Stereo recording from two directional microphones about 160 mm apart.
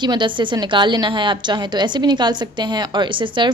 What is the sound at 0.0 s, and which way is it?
A woman's voice, 30° right (ahead or behind).